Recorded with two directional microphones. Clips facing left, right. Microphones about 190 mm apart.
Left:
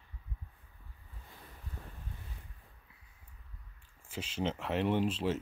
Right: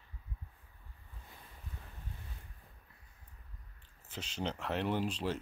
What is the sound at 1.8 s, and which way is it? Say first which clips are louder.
Wind: left 6 dB; 40° left (ahead or behind).